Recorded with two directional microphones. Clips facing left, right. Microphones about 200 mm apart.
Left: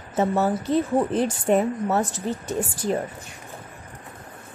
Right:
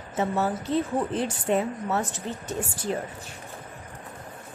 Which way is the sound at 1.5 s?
50° left (ahead or behind).